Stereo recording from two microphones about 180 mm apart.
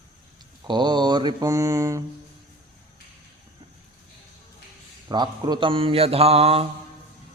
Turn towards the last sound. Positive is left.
turn(degrees=-35)  # may be behind; listen again after turning